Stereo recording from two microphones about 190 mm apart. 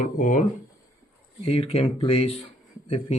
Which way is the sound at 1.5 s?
30° left (ahead or behind).